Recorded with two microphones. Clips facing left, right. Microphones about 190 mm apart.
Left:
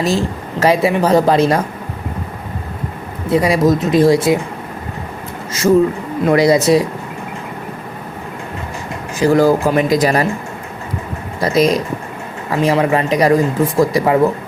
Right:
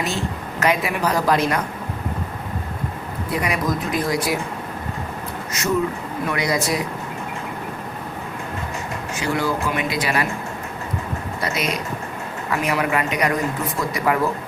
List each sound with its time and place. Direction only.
0.0 s speech: 35° left (ahead or behind)
3.2 s speech: 30° left (ahead or behind)
6.3 s speech: 30° left (ahead or behind)
9.1 s speech: 40° left (ahead or behind)
11.3 s speech: 35° left (ahead or behind)